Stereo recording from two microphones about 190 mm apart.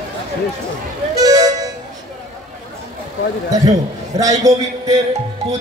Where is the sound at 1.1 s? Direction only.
20° right (ahead or behind).